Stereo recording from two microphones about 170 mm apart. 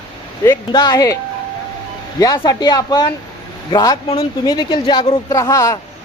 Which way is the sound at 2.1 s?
25° left (ahead or behind).